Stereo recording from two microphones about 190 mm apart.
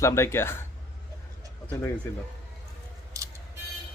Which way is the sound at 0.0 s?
15° left (ahead or behind).